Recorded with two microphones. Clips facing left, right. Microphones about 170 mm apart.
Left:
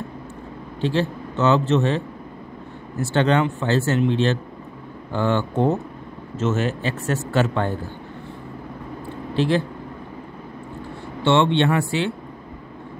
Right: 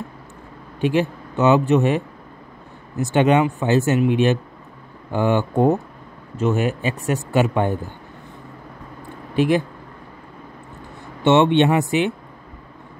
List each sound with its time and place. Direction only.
0.7 s a man's voice: 15° right (ahead or behind)
9.3 s speech: 15° right (ahead or behind)
11.2 s speech: 20° right (ahead or behind)